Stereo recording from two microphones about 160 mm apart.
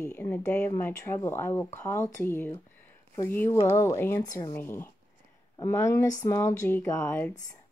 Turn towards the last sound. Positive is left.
turn(degrees=15)  # may be behind; listen again after turning